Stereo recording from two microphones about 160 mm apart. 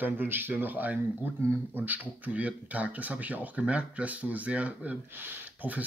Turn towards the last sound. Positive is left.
turn(degrees=-10)  # may be behind; listen again after turning